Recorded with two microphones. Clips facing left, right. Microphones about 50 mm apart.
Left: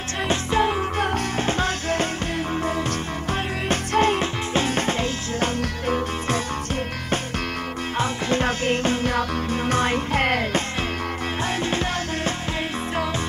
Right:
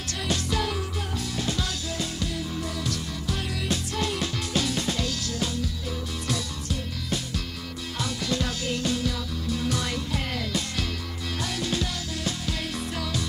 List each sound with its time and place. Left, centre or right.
0.3 s music: left
0.9 s music: left
3.3 s music: left
8.0 s music: left
11.6 s music: left